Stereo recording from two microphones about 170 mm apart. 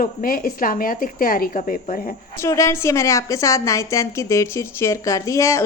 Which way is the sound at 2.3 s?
15° left (ahead or behind).